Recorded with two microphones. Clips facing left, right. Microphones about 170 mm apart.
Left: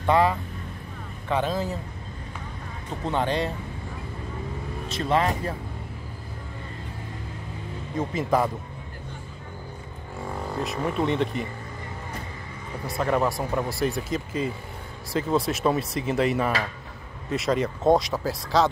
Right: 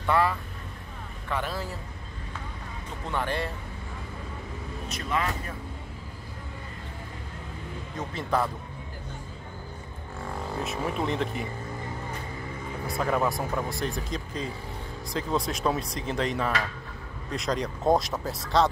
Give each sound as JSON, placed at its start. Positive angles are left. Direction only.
{"t": 0.0, "sound": "speech", "side_deg": 20}
{"t": 3.1, "sound": "speech", "side_deg": 20}
{"t": 4.8, "sound": "speech", "side_deg": 30}
{"t": 8.1, "sound": "speech", "side_deg": 10}
{"t": 10.6, "sound": "speech", "side_deg": 0}
{"t": 12.8, "sound": "speech", "side_deg": 0}